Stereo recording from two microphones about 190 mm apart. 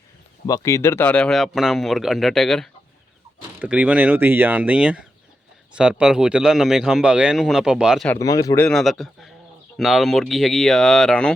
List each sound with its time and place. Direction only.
0.4 s speech: 20° left (ahead or behind); by 8.0 s 5° right (ahead or behind)
8.0 s speech: 15° left (ahead or behind)
8.6 s speech: centre (ahead or behind)